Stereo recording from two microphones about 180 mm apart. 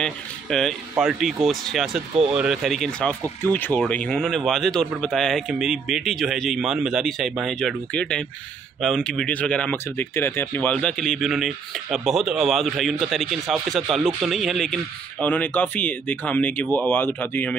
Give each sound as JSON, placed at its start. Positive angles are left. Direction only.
{"t": 0.0, "sound": "speech", "side_deg": 0}